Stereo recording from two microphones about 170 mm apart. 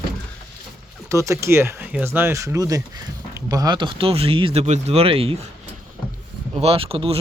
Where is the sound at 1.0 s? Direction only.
15° right (ahead or behind); by 5.5 s 35° right (ahead or behind).